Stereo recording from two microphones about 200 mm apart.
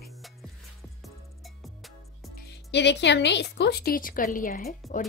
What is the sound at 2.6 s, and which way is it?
A woman's voice, 60° left (ahead or behind).